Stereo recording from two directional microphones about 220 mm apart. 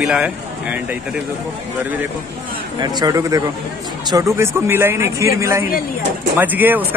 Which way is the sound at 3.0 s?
15° right (ahead or behind).